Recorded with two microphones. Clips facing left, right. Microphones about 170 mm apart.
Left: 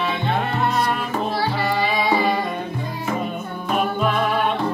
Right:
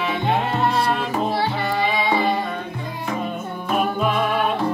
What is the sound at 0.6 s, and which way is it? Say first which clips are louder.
Music: right 1 dB; 30° right (ahead or behind).